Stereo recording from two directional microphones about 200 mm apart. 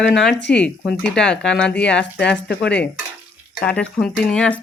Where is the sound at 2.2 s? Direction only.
60° left (ahead or behind).